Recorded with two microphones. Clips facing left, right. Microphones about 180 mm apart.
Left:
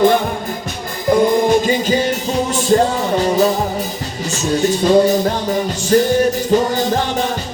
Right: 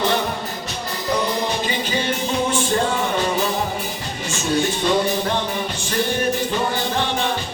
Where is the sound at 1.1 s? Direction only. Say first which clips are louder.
Left 10 dB; 50° left (ahead or behind).